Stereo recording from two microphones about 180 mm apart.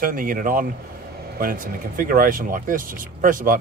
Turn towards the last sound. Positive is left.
turn(degrees=-50)  # may be behind; listen again after turning